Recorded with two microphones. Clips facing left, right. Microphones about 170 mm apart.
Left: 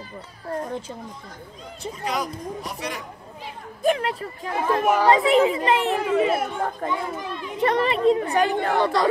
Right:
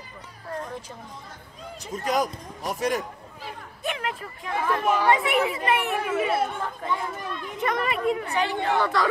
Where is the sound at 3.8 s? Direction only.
35° left (ahead or behind).